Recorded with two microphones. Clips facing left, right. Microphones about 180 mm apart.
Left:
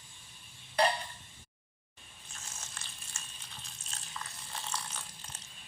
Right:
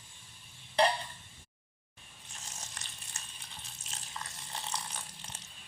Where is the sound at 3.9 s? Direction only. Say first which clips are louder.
Even; 20° right (ahead or behind).